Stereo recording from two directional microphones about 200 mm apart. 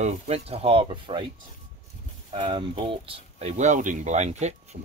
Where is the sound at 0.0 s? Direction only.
30° right (ahead or behind).